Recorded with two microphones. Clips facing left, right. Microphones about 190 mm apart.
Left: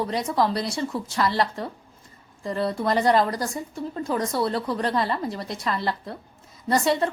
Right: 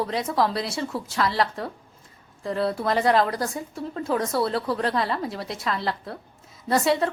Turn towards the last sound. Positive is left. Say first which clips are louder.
# even
turn(degrees=0)  # may be behind; listen again after turning